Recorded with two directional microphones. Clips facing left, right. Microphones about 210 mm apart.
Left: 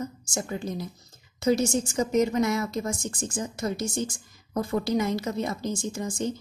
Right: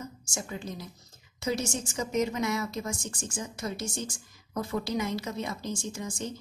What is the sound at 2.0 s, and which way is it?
A woman's voice, 45° left (ahead or behind).